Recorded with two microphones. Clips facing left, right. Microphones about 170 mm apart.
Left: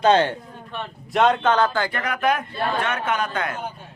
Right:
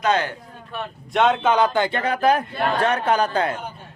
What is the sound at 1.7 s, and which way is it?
A man's voice, 25° right (ahead or behind).